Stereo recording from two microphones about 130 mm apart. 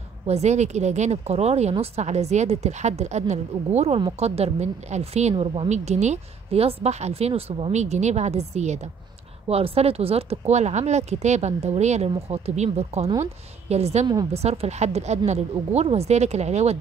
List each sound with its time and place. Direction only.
0.3 s speech: 60° right (ahead or behind)
5.4 s speech: 40° right (ahead or behind)
5.7 s speech: 60° right (ahead or behind)